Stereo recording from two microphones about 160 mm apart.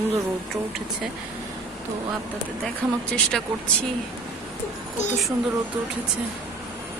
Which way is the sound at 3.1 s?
5° left (ahead or behind).